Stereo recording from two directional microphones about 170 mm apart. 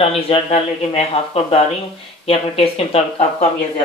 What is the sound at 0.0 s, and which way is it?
Speech, 35° left (ahead or behind).